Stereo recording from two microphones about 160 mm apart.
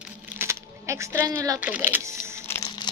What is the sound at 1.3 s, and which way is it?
Speech, 20° right (ahead or behind).